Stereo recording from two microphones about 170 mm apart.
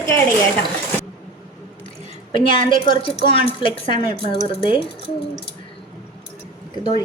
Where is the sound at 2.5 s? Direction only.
55° right (ahead or behind).